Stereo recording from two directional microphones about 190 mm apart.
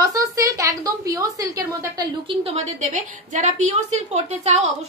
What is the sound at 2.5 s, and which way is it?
A woman's voice, 40° right (ahead or behind).